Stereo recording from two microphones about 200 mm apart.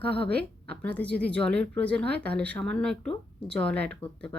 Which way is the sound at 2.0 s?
55° right (ahead or behind).